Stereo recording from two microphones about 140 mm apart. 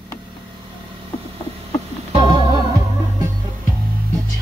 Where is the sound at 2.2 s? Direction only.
35° right (ahead or behind).